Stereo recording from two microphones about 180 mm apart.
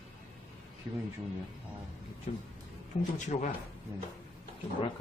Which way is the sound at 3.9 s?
15° right (ahead or behind).